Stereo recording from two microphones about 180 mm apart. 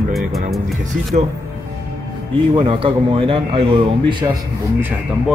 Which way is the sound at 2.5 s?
30° right (ahead or behind).